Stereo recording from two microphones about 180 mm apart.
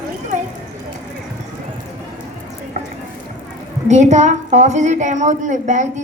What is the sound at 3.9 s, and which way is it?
A woman's voice, 40° right (ahead or behind).